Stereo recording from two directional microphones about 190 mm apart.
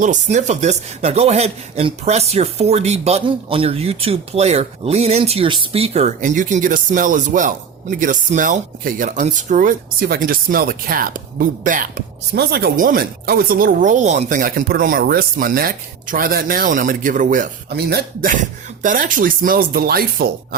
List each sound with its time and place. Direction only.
0.0 s speech: 40° right (ahead or behind)